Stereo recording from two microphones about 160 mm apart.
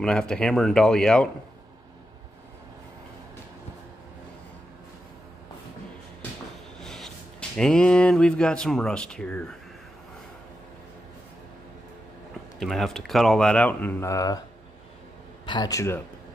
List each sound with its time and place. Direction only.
0.0 s speech: 5° left (ahead or behind)
6.8 s speech: 5° left (ahead or behind)
12.5 s speech: centre (ahead or behind); by 14.4 s 20° left (ahead or behind)
15.4 s a man's voice: 25° left (ahead or behind)